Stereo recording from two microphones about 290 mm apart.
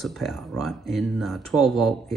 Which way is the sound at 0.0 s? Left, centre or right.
Centre.